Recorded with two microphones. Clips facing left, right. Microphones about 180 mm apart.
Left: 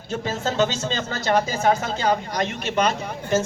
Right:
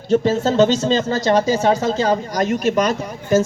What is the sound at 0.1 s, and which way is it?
A man's voice, 40° right (ahead or behind).